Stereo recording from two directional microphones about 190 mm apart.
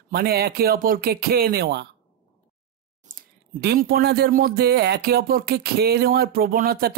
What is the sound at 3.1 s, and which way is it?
Speech, 55° right (ahead or behind).